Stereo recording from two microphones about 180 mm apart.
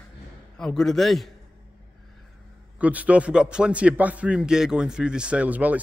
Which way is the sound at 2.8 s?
10° right (ahead or behind).